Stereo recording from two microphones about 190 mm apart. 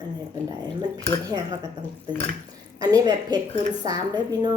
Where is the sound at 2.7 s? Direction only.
20° right (ahead or behind).